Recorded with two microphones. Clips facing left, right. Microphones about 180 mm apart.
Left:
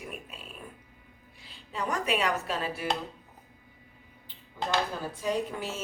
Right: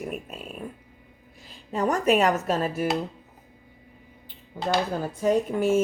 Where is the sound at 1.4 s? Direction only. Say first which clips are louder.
Right 8 dB; 45° right (ahead or behind).